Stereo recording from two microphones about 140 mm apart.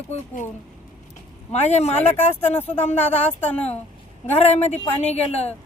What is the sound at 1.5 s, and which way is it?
Speech, 50° left (ahead or behind).